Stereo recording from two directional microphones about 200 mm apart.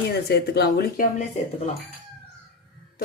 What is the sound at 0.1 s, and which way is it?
Speech, 55° left (ahead or behind).